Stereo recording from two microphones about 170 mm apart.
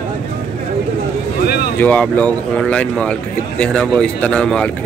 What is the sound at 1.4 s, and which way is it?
Speech, 70° left (ahead or behind).